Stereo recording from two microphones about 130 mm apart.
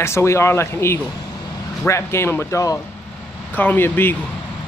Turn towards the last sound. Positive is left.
turn(degrees=15)  # may be behind; listen again after turning